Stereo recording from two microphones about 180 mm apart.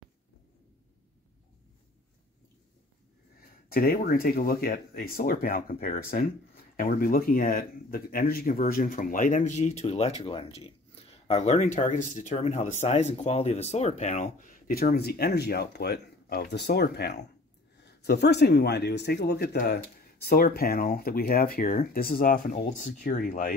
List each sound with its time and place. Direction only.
3.6 s speech: 55° left (ahead or behind)